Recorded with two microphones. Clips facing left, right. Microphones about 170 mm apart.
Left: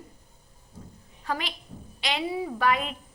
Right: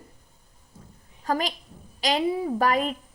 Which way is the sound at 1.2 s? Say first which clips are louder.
Right 6 dB; 40° right (ahead or behind).